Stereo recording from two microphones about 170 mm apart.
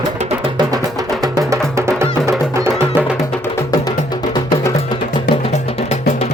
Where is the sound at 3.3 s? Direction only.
15° left (ahead or behind).